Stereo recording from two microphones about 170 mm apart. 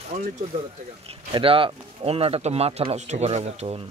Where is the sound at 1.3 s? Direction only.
30° right (ahead or behind).